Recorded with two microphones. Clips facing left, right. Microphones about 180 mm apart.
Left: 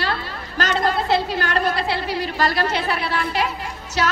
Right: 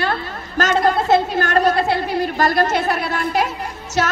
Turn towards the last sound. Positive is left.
turn(degrees=-50)  # may be behind; listen again after turning